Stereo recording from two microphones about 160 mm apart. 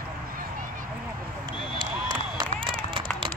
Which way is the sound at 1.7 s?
30° right (ahead or behind).